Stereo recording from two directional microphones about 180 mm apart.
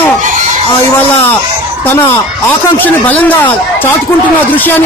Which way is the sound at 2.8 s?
10° left (ahead or behind).